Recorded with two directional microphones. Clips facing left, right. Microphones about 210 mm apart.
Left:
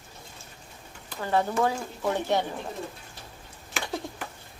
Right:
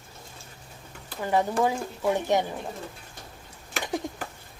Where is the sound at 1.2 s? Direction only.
15° right (ahead or behind).